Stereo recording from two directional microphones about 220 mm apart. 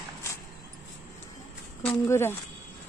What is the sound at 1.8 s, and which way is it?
Speech, 10° left (ahead or behind).